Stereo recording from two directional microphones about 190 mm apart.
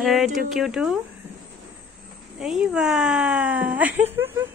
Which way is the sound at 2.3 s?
5° right (ahead or behind).